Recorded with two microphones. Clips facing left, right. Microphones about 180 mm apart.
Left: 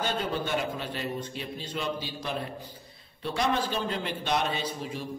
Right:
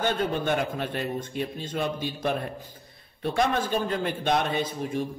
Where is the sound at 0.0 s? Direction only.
55° right (ahead or behind).